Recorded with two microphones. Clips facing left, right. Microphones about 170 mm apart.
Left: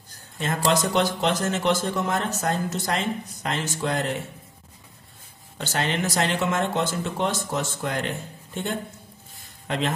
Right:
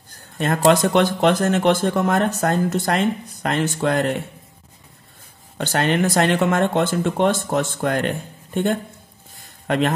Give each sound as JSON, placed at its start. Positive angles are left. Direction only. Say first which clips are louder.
{"t": 0.7, "sound": "speech", "louder": "right 6 dB", "side_deg": -60}
{"t": 5.6, "sound": "speech", "louder": "right 7 dB", "side_deg": -55}
{"t": 9.7, "sound": "a man's voice", "louder": "right 7 dB", "side_deg": -55}